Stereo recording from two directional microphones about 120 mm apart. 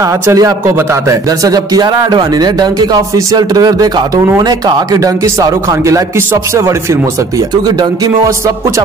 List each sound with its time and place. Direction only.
0.0 s a man's voice: 30° right (ahead or behind)